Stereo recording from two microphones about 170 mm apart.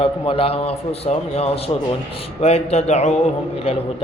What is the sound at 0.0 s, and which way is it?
A man's voice, 35° left (ahead or behind).